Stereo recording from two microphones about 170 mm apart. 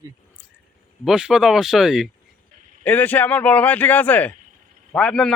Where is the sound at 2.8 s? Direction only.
10° left (ahead or behind).